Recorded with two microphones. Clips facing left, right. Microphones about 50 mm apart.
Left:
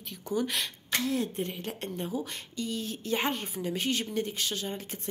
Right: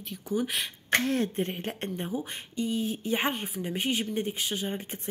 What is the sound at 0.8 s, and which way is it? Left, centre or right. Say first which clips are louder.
Speech: right 5 dB; right.